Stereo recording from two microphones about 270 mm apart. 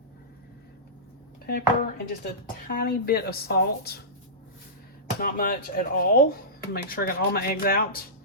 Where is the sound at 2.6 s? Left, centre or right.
Left.